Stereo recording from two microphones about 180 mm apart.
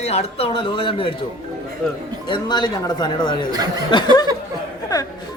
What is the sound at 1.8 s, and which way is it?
Speech, 5° left (ahead or behind).